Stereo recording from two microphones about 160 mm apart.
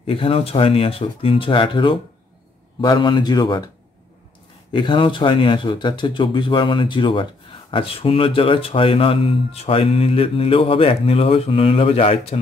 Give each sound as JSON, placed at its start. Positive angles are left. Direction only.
{"t": 0.0, "sound": "a man's voice", "side_deg": 35}
{"t": 4.7, "sound": "speech", "side_deg": 30}